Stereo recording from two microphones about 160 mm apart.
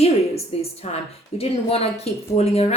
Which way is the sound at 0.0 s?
40° left (ahead or behind).